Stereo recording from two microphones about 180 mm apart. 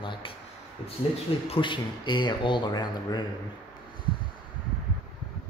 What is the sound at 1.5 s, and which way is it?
Speech, 25° left (ahead or behind).